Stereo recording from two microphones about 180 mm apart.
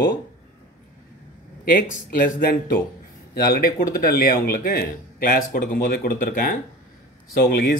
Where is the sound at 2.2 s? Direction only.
55° left (ahead or behind).